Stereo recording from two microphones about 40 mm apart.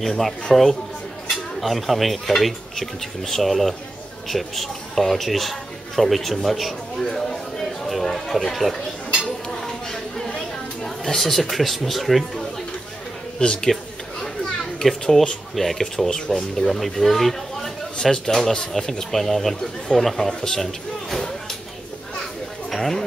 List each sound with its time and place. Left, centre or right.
0.0 s a man's voice: centre
7.1 s a sound: centre
9.5 s chatter: centre
10.8 s a sound: centre
11.5 s speech: centre
13.4 s a man's voice: left
14.2 s children playing: centre
15.5 s speech: centre
16.1 s speech: centre
16.6 s speech: centre
18.7 s speech: centre
20.4 s a sound: centre
22.7 s a sound: centre